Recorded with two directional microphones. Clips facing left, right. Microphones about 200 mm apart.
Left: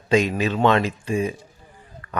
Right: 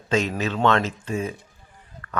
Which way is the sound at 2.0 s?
10° left (ahead or behind).